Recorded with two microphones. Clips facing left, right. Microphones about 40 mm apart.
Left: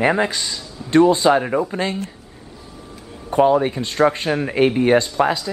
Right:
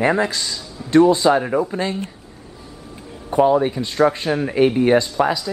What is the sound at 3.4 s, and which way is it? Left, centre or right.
Speech, centre.